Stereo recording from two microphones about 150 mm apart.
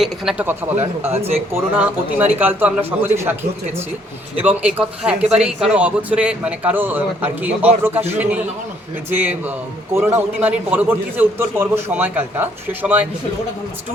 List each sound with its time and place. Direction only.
0.0 s speech: centre (ahead or behind)
0.4 s speech: 15° right (ahead or behind)
1.0 s speech: 45° right (ahead or behind)
1.5 s speech: 10° right (ahead or behind)
4.4 s speech: 10° right (ahead or behind)
9.9 s speech: 15° right (ahead or behind)